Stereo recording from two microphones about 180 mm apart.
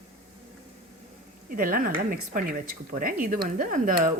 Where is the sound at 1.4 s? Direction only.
50° right (ahead or behind).